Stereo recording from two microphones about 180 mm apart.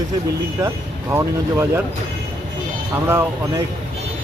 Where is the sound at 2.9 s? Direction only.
15° right (ahead or behind).